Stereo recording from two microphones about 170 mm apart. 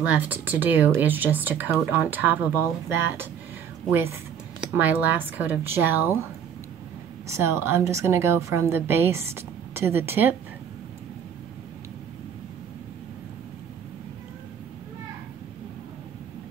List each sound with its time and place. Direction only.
0.0 s a woman's voice: 10° right (ahead or behind)
3.9 s a woman's voice: 15° right (ahead or behind)
7.2 s a woman's voice: 15° right (ahead or behind)